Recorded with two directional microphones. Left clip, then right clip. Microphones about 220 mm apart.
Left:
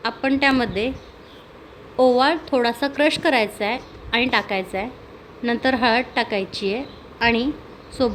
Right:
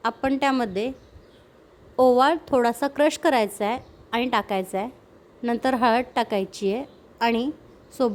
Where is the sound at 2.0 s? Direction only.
35° right (ahead or behind).